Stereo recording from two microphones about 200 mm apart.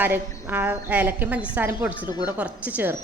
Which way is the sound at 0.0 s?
10° right (ahead or behind).